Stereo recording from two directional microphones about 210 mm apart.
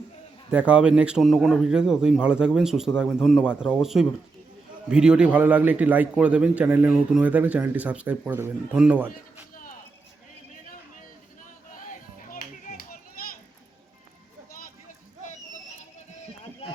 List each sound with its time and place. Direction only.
0.5 s a man's voice: 5° right (ahead or behind)
12.3 s music: 45° left (ahead or behind)